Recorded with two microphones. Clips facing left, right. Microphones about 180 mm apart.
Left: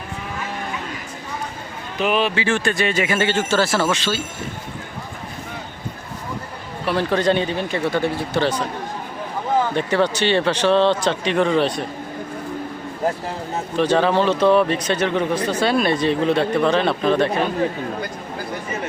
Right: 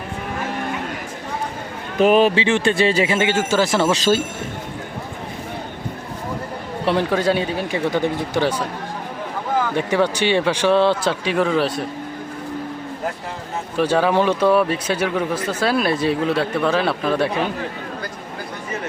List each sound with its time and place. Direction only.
2.0 s speech: 45° right (ahead or behind)
2.3 s speech: 25° right (ahead or behind)
3.2 s speech: 15° right (ahead or behind)
3.9 s speech: 40° right (ahead or behind)
7.1 s speech: 5° right (ahead or behind)
9.7 s speech: 10° right (ahead or behind)
13.7 s speech: 10° right (ahead or behind)